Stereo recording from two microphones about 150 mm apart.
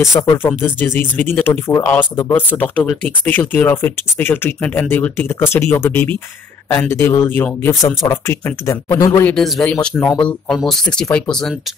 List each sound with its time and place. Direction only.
0.0 s speech: 20° left (ahead or behind)
9.2 s speech: 5° left (ahead or behind)